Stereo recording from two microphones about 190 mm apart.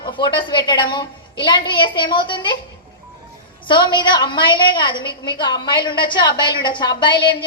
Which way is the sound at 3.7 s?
25° left (ahead or behind).